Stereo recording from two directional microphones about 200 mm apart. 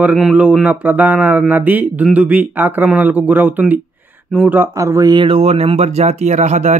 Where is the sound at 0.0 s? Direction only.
Centre (ahead or behind).